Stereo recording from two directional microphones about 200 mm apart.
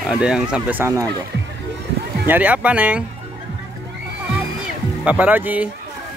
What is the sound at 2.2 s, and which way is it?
Speech, 10° right (ahead or behind).